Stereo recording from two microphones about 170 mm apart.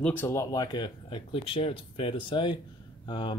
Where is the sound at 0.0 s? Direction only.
10° left (ahead or behind).